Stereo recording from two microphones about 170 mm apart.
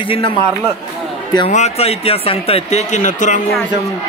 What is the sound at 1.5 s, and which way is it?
Speech, 40° left (ahead or behind).